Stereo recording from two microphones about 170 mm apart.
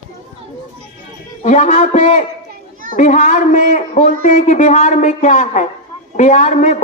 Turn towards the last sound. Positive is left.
turn(degrees=45)  # may be behind; listen again after turning